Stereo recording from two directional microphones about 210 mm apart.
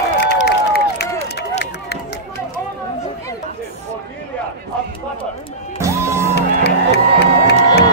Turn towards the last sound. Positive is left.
turn(degrees=50)  # may be behind; listen again after turning